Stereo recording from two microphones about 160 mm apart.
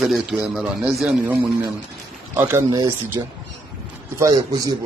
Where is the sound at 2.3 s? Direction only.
15° right (ahead or behind).